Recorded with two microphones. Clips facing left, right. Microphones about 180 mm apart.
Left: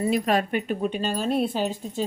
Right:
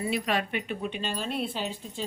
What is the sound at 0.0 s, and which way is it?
Speech, 45° left (ahead or behind).